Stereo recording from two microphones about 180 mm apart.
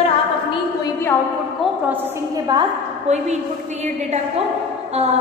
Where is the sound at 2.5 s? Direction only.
20° right (ahead or behind).